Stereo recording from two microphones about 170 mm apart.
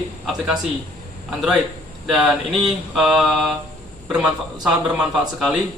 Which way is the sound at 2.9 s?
Centre (ahead or behind).